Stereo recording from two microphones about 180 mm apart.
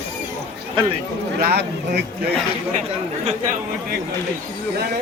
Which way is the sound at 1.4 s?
65° right (ahead or behind).